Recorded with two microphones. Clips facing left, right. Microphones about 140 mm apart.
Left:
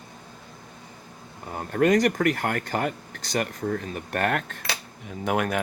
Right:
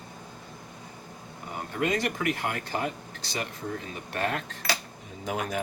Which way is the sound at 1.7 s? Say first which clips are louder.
Left 8 dB; 50° left (ahead or behind).